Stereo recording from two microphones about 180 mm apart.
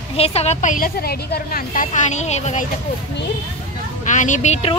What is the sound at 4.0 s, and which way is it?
Speech, 45° left (ahead or behind).